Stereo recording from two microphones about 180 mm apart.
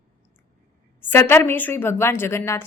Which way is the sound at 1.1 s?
15° left (ahead or behind).